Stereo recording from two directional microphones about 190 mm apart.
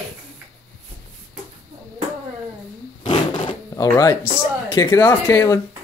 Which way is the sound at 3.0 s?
20° left (ahead or behind).